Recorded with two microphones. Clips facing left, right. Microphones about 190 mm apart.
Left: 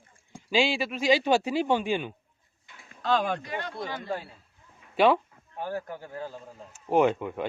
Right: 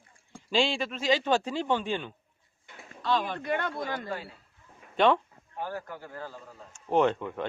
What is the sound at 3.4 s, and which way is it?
Speech, 55° right (ahead or behind).